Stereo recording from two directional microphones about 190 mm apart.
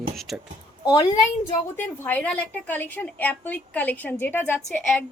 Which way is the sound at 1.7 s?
10° left (ahead or behind).